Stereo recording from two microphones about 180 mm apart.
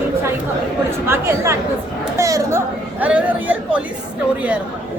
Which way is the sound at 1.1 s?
15° right (ahead or behind).